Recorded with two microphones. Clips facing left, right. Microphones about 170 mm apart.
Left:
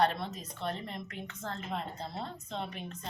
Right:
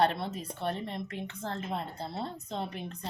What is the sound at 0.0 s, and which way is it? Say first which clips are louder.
Speech: right 2 dB; 30° right (ahead or behind).